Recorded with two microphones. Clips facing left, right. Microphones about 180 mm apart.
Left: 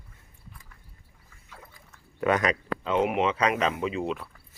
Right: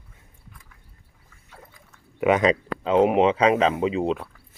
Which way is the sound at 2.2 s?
25° right (ahead or behind).